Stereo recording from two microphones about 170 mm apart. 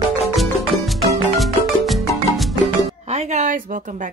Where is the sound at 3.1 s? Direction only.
45° right (ahead or behind).